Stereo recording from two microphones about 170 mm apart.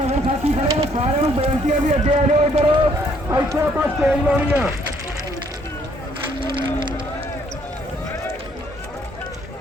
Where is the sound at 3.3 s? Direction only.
15° right (ahead or behind).